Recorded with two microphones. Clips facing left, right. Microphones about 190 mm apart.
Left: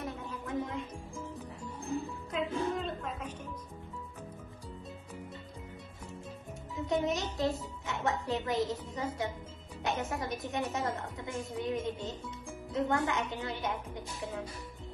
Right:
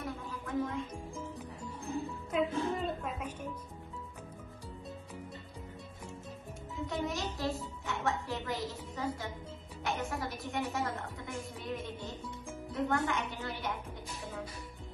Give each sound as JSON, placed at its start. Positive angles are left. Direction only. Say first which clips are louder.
{"t": 0.0, "sound": "music", "louder": "left 1 dB", "side_deg": 20}
{"t": 2.3, "sound": "a sound", "louder": "right 1 dB", "side_deg": -5}
{"t": 6.9, "sound": "a child's voice", "louder": "left 5 dB", "side_deg": 20}